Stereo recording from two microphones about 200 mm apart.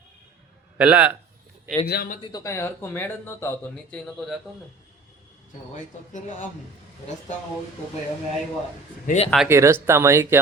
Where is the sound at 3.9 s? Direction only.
Centre (ahead or behind).